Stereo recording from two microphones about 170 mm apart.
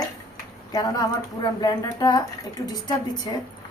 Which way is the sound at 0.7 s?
25° left (ahead or behind).